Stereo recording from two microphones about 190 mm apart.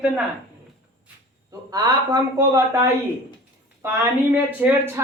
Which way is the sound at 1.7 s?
20° right (ahead or behind).